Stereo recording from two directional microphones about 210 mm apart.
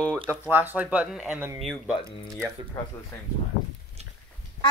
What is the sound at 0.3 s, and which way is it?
A child's voice, 10° right (ahead or behind).